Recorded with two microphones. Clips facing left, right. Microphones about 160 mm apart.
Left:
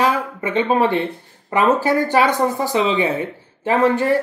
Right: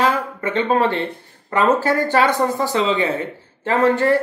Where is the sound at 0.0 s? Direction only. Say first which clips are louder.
Even; 15° left (ahead or behind).